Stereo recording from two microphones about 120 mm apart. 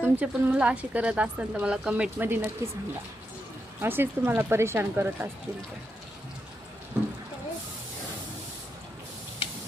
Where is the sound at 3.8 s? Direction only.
20° right (ahead or behind).